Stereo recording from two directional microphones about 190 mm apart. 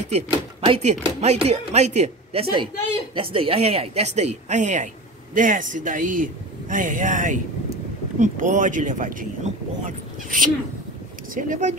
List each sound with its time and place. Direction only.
0.1 s speech: 30° right (ahead or behind)